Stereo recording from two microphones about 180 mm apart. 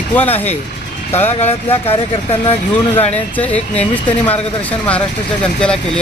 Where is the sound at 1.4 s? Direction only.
35° left (ahead or behind).